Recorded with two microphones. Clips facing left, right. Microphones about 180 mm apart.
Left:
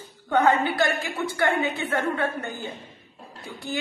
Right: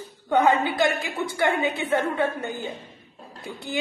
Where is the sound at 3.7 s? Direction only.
15° right (ahead or behind).